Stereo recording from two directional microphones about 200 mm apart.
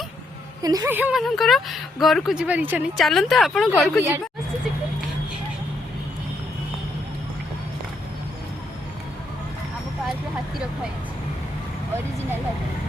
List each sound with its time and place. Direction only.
0.6 s speech: 15° right (ahead or behind); by 4.0 s centre (ahead or behind)